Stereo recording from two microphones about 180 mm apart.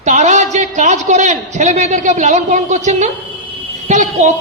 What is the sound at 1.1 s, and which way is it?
A woman's voice, 40° right (ahead or behind).